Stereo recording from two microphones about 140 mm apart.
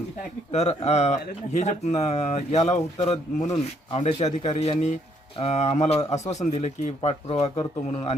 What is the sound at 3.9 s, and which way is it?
Speech, 45° left (ahead or behind).